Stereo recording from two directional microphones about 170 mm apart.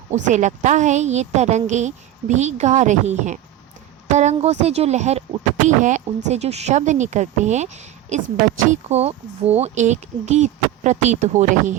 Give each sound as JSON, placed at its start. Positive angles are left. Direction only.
{"t": 0.1, "sound": "speech", "side_deg": -45}